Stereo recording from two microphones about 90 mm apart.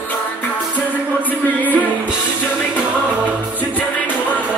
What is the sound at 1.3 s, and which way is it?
Music, 20° left (ahead or behind).